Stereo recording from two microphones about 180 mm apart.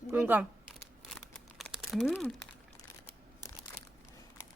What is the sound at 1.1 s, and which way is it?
Crumpling, centre (ahead or behind).